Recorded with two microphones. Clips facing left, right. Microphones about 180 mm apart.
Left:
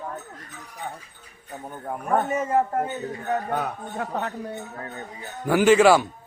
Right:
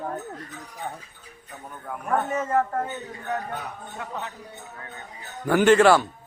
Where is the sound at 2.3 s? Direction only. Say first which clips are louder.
Left 1 dB; 15° left (ahead or behind).